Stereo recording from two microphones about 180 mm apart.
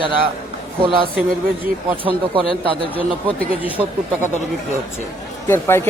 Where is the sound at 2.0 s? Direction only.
30° right (ahead or behind).